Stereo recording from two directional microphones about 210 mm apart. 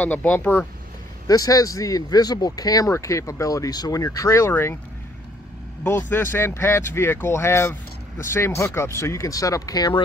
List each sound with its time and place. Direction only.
0.0 s speech: 5° left (ahead or behind)
5.9 s speech: 10° left (ahead or behind)